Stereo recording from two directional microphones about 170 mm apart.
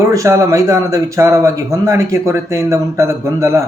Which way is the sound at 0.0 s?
20° right (ahead or behind).